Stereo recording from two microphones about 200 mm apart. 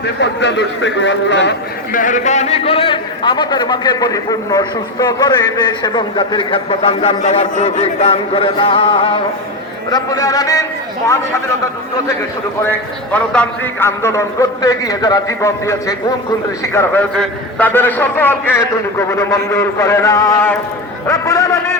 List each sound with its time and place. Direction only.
0.0 s speech: 60° left (ahead or behind)
1.9 s a man's voice: 40° left (ahead or behind); by 11.2 s 15° left (ahead or behind)
12.6 s a man's voice: 10° left (ahead or behind)